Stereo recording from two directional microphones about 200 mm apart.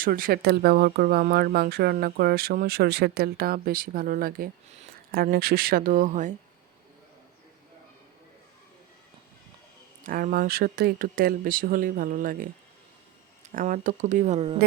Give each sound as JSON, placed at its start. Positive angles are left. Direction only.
{"t": 0.0, "sound": "speech", "side_deg": -45}
{"t": 10.0, "sound": "speech", "side_deg": -45}
{"t": 13.5, "sound": "speech", "side_deg": -40}